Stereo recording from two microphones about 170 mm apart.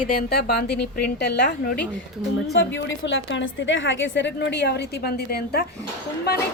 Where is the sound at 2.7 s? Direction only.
90° left.